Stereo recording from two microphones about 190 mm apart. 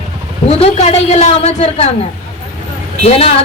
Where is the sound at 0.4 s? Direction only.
35° left (ahead or behind).